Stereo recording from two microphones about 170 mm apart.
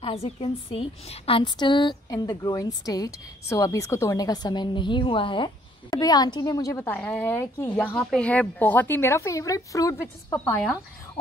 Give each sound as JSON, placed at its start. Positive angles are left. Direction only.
{"t": 0.0, "sound": "a woman's voice", "side_deg": 35}